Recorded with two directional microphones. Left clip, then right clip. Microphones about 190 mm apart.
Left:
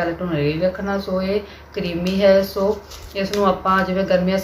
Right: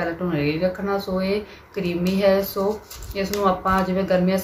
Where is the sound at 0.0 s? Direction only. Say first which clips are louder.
Left 3 dB; 5° right (ahead or behind).